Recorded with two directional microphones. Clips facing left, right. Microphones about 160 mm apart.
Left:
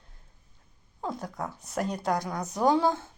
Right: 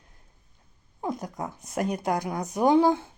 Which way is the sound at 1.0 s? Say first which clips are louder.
Right 2 dB; 15° right (ahead or behind).